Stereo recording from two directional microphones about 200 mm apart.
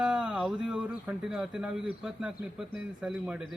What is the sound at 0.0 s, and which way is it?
Speech, 5° right (ahead or behind).